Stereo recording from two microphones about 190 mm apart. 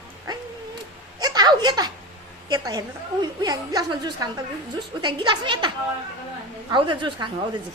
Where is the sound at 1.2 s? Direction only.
20° right (ahead or behind).